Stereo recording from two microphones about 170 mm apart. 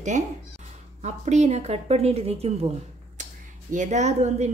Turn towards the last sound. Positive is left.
turn(degrees=-40)  # may be behind; listen again after turning